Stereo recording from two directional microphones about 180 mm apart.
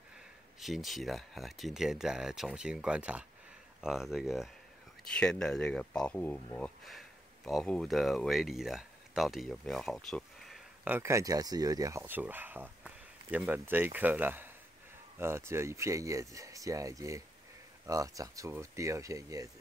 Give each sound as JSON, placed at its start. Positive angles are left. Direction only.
{"t": 0.6, "sound": "speech", "side_deg": 0}